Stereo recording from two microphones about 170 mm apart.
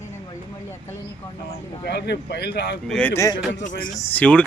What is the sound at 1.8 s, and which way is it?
Speech, 75° left (ahead or behind).